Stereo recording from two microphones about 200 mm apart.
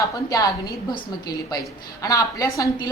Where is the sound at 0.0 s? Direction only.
15° left (ahead or behind).